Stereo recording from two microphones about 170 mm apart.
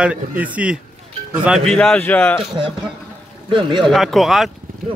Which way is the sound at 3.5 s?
30° right (ahead or behind).